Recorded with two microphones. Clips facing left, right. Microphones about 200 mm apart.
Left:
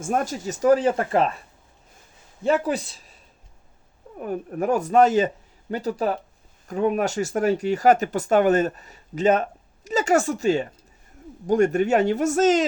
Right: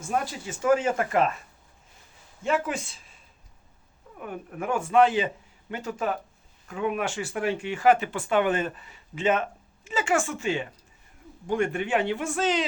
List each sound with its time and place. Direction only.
0.0 s speech: 45° left (ahead or behind)
2.4 s speech: 35° left (ahead or behind)
4.2 s speech: 40° left (ahead or behind)